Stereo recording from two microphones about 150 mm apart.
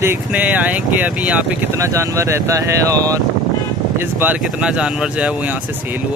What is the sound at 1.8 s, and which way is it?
Speech, 20° right (ahead or behind).